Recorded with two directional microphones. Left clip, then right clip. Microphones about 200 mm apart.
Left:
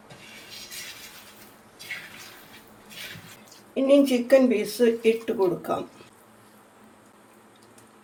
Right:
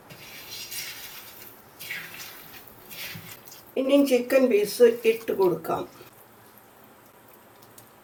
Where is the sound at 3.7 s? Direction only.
25° left (ahead or behind).